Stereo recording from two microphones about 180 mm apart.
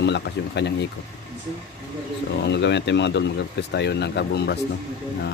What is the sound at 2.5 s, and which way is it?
Speech, 75° left (ahead or behind).